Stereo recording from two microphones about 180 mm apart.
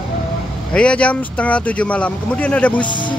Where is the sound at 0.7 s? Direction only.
5° left (ahead or behind).